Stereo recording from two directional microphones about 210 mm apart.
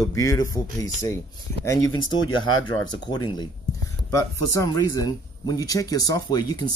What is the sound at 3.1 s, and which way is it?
Speech, 20° left (ahead or behind).